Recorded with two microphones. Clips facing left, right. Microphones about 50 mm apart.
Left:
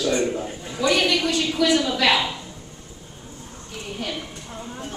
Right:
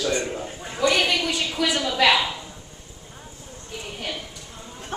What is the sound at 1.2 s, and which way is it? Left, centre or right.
Speech, centre.